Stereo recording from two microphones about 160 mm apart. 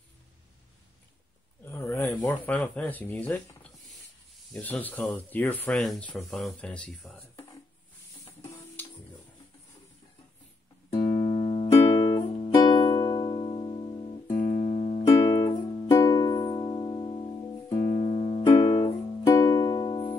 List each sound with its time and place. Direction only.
1.7 s a sound: 15° left (ahead or behind)
2.2 s speech: 10° left (ahead or behind)
4.6 s speech: 10° left (ahead or behind)
8.8 s music: 15° left (ahead or behind)
11.1 s music: 35° left (ahead or behind)
14.4 s music: 50° left (ahead or behind)
15.1 s music: 25° left (ahead or behind)
17.9 s music: 45° left (ahead or behind)
18.4 s music: 25° left (ahead or behind)